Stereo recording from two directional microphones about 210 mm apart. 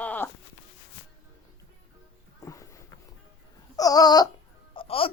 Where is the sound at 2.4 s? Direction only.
15° left (ahead or behind).